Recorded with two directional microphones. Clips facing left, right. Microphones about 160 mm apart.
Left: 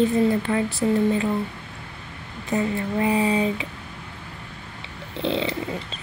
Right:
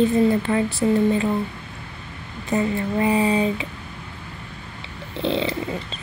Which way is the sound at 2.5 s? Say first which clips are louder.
Right 2 dB; 30° right (ahead or behind).